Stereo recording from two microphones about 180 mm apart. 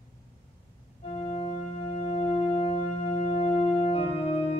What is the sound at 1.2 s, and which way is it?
Organ, 30° left (ahead or behind).